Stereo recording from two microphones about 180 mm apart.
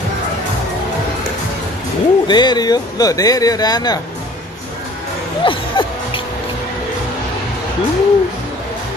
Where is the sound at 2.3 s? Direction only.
25° left (ahead or behind).